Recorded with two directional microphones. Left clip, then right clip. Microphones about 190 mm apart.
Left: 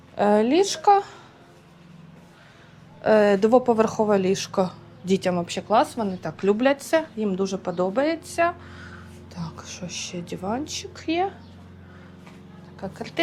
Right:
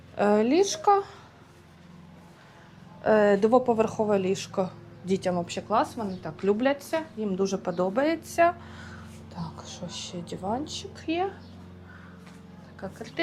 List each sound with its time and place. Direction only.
0.2 s a woman's voice: 5° left (ahead or behind)
3.0 s a woman's voice: 10° left (ahead or behind)
7.3 s a woman's voice: 5° left (ahead or behind)
9.3 s a woman's voice: 10° left (ahead or behind)
12.8 s a woman's voice: 10° left (ahead or behind)